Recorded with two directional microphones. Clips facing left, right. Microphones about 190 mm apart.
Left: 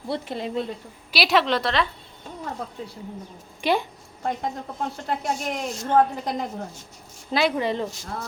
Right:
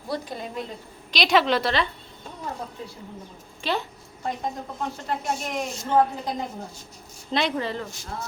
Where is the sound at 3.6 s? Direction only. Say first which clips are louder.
Left 5 dB; 15° left (ahead or behind).